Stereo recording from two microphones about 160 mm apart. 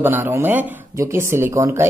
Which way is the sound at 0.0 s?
15° right (ahead or behind).